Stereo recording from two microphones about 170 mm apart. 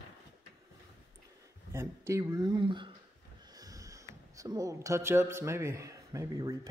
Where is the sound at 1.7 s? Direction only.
15° right (ahead or behind).